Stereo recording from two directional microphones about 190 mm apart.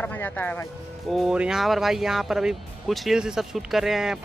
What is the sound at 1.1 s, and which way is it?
Speech, 5° right (ahead or behind).